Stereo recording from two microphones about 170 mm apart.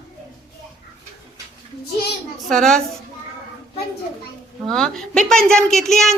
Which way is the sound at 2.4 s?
Centre (ahead or behind).